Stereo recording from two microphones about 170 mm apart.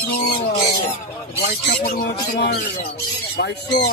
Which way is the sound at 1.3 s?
75° left (ahead or behind).